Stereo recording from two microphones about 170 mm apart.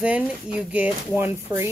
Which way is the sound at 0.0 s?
5° right (ahead or behind).